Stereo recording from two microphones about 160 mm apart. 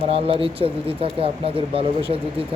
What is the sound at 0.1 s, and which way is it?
Speech, 35° right (ahead or behind).